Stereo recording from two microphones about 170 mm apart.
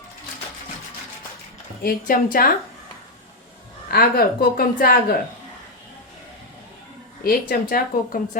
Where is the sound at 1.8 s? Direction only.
55° left (ahead or behind).